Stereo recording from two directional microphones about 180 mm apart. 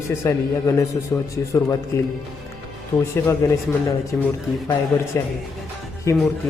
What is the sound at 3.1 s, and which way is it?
A man's voice, 15° left (ahead or behind).